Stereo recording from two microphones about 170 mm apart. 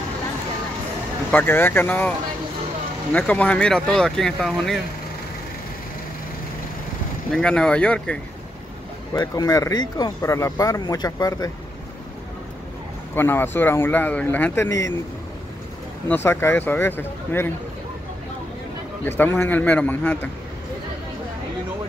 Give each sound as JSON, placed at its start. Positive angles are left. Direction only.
{"t": 1.3, "sound": "speech", "side_deg": 10}
{"t": 7.3, "sound": "speech", "side_deg": 5}
{"t": 9.1, "sound": "speech", "side_deg": 20}
{"t": 13.1, "sound": "speech", "side_deg": 10}
{"t": 16.1, "sound": "speech", "side_deg": 15}
{"t": 19.0, "sound": "speech", "side_deg": 15}